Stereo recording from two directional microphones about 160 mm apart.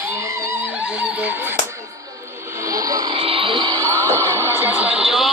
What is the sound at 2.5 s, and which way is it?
Music, 20° right (ahead or behind).